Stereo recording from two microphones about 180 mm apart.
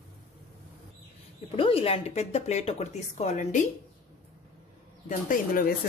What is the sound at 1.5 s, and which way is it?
Speech, 30° left (ahead or behind).